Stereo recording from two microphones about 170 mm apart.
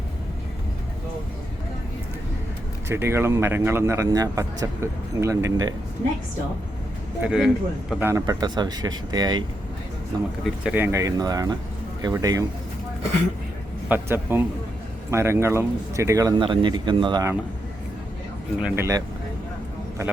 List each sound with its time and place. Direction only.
2.9 s speech: 15° right (ahead or behind)
7.2 s speech: 5° right (ahead or behind)
8.0 s speech: 20° right (ahead or behind)
10.4 s speech: 5° right (ahead or behind)
13.8 s speech: 10° right (ahead or behind); by 17.2 s 25° right (ahead or behind)
18.6 s speech: 15° right (ahead or behind)